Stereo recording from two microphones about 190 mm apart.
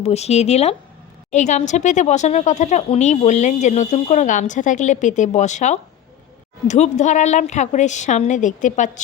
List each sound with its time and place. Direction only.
0.0 s speech: 35° left (ahead or behind)